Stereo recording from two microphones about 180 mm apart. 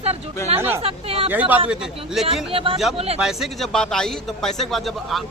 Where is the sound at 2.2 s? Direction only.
30° right (ahead or behind).